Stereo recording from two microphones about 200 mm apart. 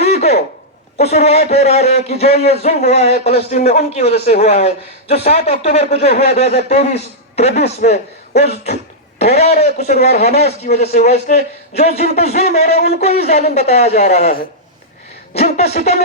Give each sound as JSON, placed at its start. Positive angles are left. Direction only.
{"t": 0.0, "sound": "a sound", "side_deg": 30}
{"t": 0.9, "sound": "a man's voice", "side_deg": 30}
{"t": 15.5, "sound": "a man's voice", "side_deg": 35}